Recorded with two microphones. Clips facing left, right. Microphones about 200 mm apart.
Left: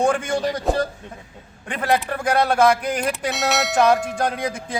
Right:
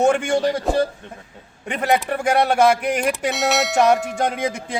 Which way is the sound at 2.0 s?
25° right (ahead or behind).